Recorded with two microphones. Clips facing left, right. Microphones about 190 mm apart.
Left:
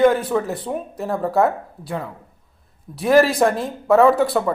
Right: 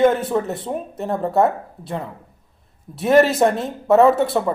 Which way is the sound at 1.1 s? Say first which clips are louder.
Even; 20° right (ahead or behind).